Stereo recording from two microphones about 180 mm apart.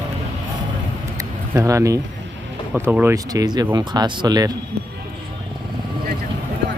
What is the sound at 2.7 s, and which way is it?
Speech, 5° right (ahead or behind).